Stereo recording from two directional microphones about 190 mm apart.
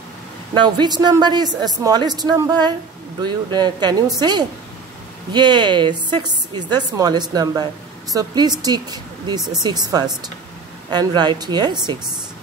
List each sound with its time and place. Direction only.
0.6 s a woman's voice: 25° right (ahead or behind)